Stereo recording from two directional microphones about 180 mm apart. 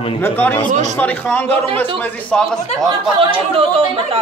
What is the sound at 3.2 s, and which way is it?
Speech, 30° right (ahead or behind).